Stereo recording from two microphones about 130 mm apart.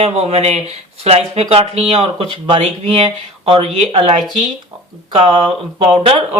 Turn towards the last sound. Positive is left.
turn(degrees=-50)  # may be behind; listen again after turning